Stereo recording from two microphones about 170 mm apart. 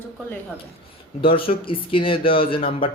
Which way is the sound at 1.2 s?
35° left (ahead or behind).